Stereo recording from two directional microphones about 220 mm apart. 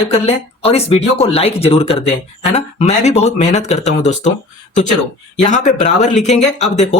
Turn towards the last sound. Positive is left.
turn(degrees=30)  # may be behind; listen again after turning